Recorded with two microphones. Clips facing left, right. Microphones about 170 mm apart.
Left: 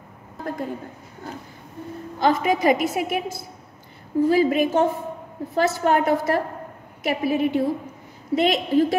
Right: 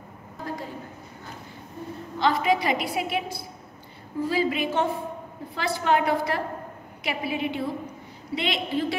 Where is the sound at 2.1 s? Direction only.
45° left (ahead or behind).